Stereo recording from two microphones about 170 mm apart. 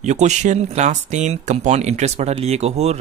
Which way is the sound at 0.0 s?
45° right (ahead or behind).